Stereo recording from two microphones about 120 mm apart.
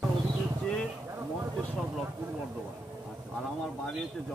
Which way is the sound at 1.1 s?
30° right (ahead or behind).